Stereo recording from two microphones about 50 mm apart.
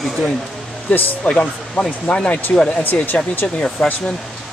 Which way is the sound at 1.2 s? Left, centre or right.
Left.